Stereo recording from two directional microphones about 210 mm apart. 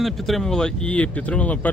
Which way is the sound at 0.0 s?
Centre (ahead or behind).